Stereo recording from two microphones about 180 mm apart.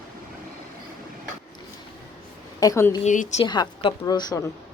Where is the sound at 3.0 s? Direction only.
45° left (ahead or behind).